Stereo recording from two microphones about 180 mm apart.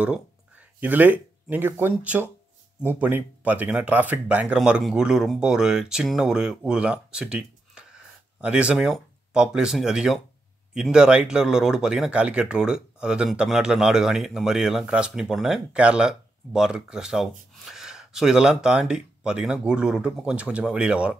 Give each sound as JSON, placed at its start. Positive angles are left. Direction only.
{"t": 0.7, "sound": "speech", "side_deg": -10}